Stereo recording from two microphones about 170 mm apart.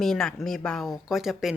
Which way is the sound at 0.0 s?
Centre (ahead or behind).